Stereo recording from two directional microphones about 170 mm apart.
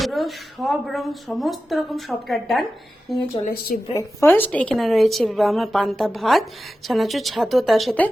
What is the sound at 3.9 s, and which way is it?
A woman's voice, 15° left (ahead or behind).